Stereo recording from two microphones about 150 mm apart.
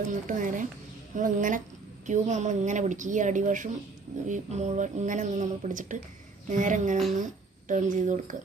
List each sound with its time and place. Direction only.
0.1 s a woman's voice: 60° right (ahead or behind)